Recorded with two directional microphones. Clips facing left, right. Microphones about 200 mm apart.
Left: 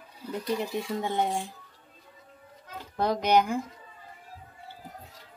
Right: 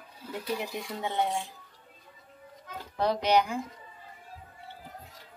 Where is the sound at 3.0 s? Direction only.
45° left (ahead or behind).